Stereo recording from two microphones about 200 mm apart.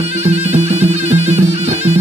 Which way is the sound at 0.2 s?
30° right (ahead or behind).